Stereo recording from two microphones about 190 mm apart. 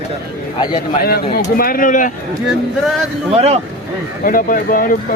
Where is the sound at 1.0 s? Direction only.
50° left (ahead or behind).